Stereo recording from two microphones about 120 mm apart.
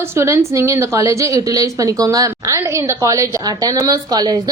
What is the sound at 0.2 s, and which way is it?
A woman's voice, 25° right (ahead or behind).